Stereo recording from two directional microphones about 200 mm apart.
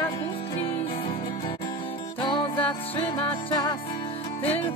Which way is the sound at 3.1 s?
20° left (ahead or behind).